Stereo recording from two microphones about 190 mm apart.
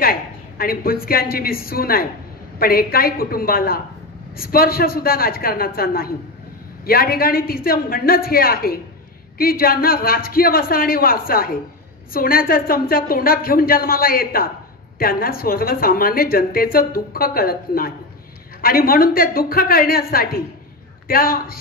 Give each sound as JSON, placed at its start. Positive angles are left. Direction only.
{"t": 0.0, "sound": "a woman's voice", "side_deg": 50}